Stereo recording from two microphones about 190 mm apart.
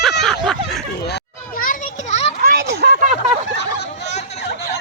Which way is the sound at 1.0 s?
55° left (ahead or behind).